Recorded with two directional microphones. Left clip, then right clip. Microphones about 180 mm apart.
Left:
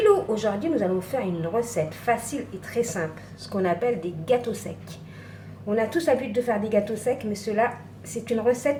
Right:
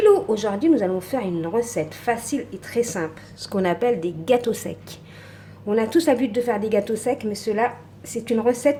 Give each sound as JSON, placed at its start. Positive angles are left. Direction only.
{"t": 0.0, "sound": "a woman's voice", "side_deg": -45}